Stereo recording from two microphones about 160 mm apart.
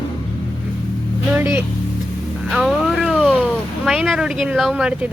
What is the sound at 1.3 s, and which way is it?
Speech, 15° right (ahead or behind).